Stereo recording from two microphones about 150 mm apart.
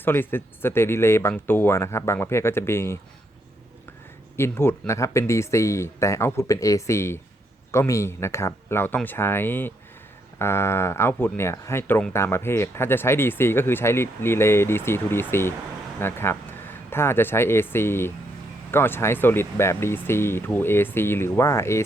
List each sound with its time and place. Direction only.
0.0 s speech: 15° left (ahead or behind)
4.4 s speech: 15° left (ahead or behind)